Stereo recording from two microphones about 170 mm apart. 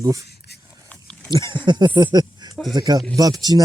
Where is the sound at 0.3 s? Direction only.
75° left (ahead or behind).